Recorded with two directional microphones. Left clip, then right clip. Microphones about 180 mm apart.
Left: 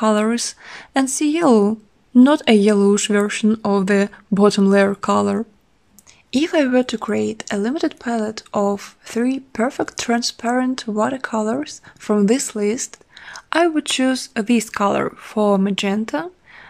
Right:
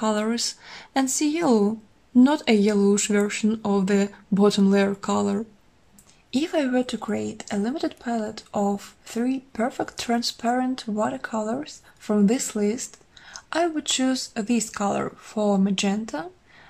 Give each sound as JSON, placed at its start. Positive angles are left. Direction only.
{"t": 0.0, "sound": "speech", "side_deg": 40}